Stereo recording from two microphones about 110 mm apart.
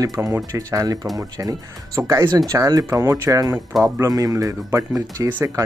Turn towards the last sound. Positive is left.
turn(degrees=-15)  # may be behind; listen again after turning